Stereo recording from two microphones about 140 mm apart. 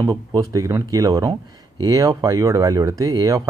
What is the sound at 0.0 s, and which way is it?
Speech, 30° right (ahead or behind).